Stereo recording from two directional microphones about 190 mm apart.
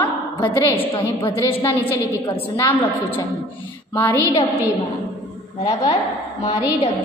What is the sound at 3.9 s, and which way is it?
Speech, 10° left (ahead or behind).